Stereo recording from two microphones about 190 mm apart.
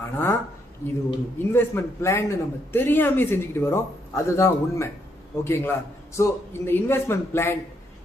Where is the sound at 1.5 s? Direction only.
15° left (ahead or behind).